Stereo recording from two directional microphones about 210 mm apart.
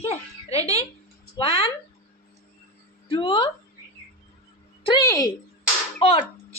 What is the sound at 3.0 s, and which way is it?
Speech, 25° left (ahead or behind).